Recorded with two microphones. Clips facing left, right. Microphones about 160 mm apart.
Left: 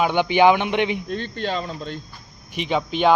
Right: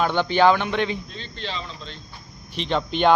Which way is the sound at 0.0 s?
15° left (ahead or behind).